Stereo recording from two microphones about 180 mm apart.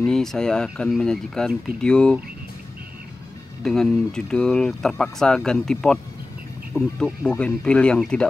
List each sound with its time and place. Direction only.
0.0 s speech: 5° left (ahead or behind)
3.6 s speech: centre (ahead or behind)